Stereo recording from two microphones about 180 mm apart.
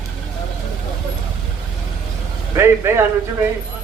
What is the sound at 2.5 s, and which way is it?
Speech, 15° right (ahead or behind).